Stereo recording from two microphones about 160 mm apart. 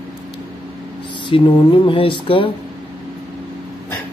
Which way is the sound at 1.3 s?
35° left (ahead or behind).